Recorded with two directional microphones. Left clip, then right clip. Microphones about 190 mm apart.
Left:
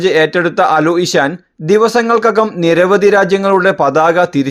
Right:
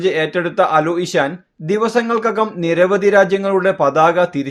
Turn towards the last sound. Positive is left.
turn(degrees=45)  # may be behind; listen again after turning